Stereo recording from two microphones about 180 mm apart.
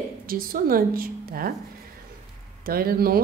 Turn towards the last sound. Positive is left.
turn(degrees=-55)  # may be behind; listen again after turning